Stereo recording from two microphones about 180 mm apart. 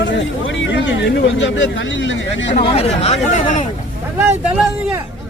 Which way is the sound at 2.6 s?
35° left (ahead or behind).